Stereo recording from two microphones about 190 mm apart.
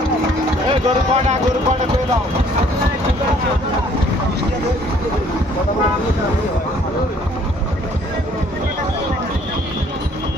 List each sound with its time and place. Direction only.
0.8 s speech: 35° right (ahead or behind)